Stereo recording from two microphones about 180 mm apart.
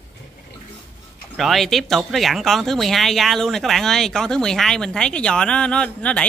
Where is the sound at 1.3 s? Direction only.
Centre (ahead or behind).